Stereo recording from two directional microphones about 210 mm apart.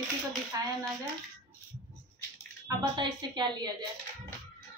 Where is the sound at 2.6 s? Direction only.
20° right (ahead or behind).